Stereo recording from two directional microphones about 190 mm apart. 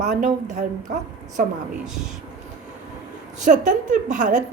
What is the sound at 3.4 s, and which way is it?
A woman's voice, 40° right (ahead or behind).